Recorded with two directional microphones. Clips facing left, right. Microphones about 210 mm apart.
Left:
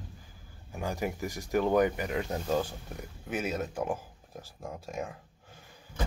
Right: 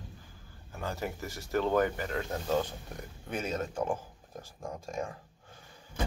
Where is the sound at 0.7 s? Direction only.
15° left (ahead or behind).